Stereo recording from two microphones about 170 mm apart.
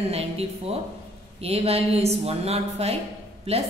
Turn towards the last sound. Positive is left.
turn(degrees=-35)  # may be behind; listen again after turning